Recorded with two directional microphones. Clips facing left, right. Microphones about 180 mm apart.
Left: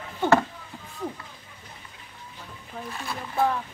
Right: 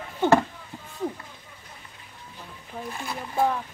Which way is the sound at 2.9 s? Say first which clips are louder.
Right 1 dB; 20° right (ahead or behind).